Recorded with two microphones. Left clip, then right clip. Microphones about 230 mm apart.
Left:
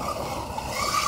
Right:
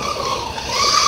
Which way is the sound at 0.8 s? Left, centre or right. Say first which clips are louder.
Right 10 dB; centre.